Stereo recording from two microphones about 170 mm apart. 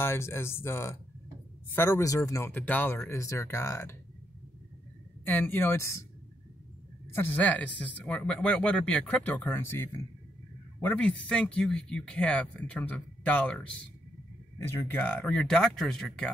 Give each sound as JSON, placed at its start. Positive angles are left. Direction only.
{"t": 0.0, "sound": "speech", "side_deg": 15}
{"t": 5.2, "sound": "speech", "side_deg": 10}
{"t": 7.2, "sound": "speech", "side_deg": 10}
{"t": 14.7, "sound": "speech", "side_deg": 10}